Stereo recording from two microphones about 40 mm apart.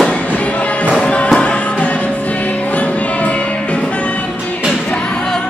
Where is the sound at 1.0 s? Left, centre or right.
Left.